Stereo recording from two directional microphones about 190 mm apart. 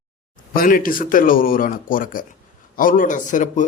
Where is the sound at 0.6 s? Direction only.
45° left (ahead or behind).